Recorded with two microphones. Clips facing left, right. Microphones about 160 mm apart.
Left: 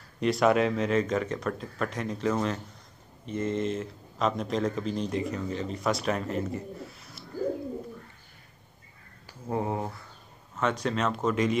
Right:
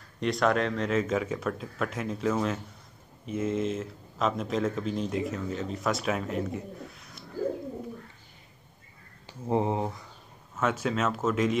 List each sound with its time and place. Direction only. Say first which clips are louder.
0.2 s speech: left 3 dB; 5° left (ahead or behind)
9.5 s speech: right 3 dB; 20° right (ahead or behind)
10.5 s speech: even; 5° right (ahead or behind)